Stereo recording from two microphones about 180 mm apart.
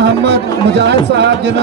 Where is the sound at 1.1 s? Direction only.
70° right (ahead or behind).